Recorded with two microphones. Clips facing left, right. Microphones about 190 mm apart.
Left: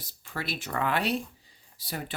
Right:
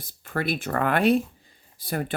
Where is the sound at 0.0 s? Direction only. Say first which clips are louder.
Right 8 dB; 55° right (ahead or behind).